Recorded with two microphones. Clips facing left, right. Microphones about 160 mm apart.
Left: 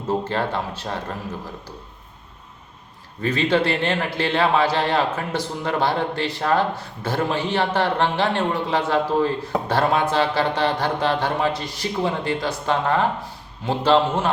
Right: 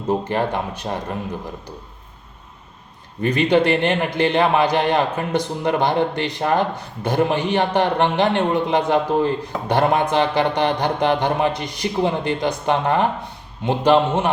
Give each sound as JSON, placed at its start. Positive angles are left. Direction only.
{"t": 0.1, "sound": "a man's voice", "side_deg": -15}
{"t": 3.2, "sound": "a man's voice", "side_deg": -15}